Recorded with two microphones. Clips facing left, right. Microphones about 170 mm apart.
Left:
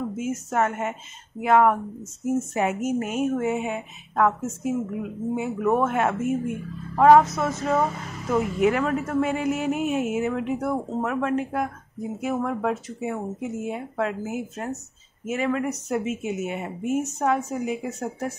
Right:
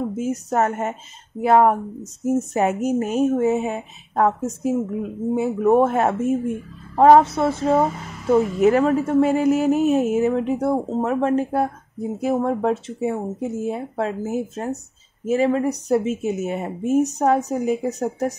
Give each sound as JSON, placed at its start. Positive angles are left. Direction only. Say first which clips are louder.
{"t": 0.1, "sound": "a woman's voice", "louder": "right 4 dB", "side_deg": -35}